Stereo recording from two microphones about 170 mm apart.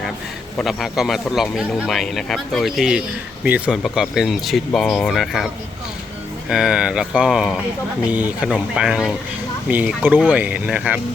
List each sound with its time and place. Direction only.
0.6 s speech: centre (ahead or behind)
6.5 s speech: 5° right (ahead or behind)